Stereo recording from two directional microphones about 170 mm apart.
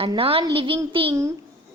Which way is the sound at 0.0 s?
35° right (ahead or behind).